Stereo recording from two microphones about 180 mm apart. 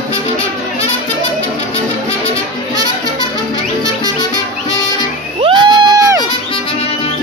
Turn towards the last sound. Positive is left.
turn(degrees=-20)  # may be behind; listen again after turning